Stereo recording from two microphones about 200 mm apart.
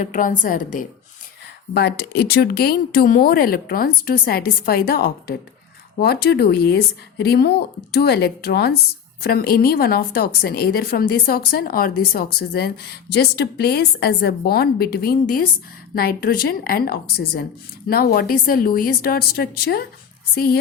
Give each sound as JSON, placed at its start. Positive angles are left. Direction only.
{"t": 0.0, "sound": "a woman's voice", "side_deg": 40}
{"t": 1.7, "sound": "a woman's voice", "side_deg": 55}